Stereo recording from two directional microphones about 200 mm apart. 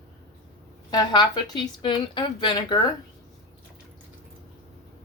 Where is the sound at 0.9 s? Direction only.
20° left (ahead or behind).